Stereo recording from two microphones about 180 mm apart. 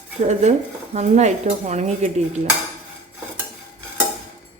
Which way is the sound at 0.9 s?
40° right (ahead or behind).